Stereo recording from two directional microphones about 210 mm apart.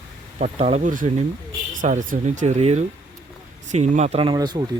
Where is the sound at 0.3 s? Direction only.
30° right (ahead or behind).